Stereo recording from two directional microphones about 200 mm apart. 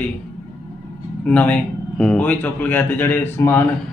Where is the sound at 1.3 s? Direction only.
5° left (ahead or behind).